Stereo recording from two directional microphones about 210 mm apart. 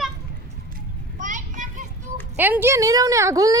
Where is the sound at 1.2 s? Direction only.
35° right (ahead or behind).